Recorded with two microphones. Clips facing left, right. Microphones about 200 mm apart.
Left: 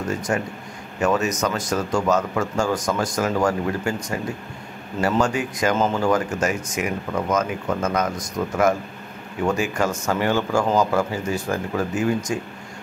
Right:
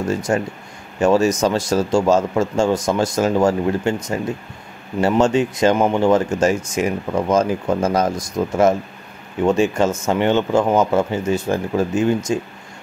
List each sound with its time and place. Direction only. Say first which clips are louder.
0.3 s speech: right 4 dB; 30° right (ahead or behind)
9.5 s speech: right 6 dB; 25° right (ahead or behind)